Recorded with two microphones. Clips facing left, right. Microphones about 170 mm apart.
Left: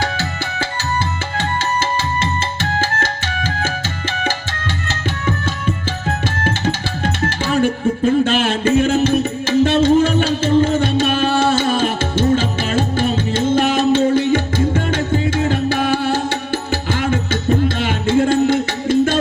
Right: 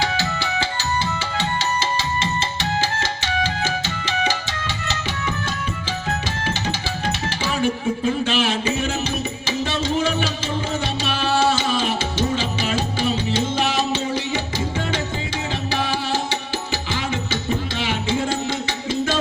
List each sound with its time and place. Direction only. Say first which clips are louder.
0.0 s music: left 1 dB; 50° left (ahead or behind)
2.7 s music: left 3 dB; 50° left (ahead or behind)
6.4 s music: left 5 dB; 50° left (ahead or behind)